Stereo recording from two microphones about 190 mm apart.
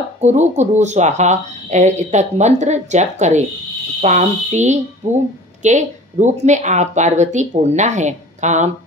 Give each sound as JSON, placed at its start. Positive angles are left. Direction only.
{"t": 0.2, "sound": "speech", "side_deg": -35}